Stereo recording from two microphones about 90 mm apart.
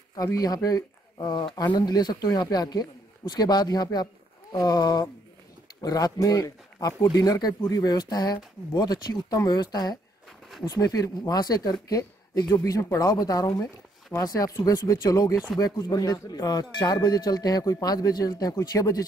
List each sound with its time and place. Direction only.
0.1 s a woman's voice: 40° left (ahead or behind)